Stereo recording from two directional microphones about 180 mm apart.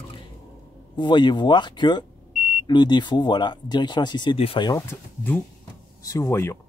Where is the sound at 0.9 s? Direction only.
25° left (ahead or behind).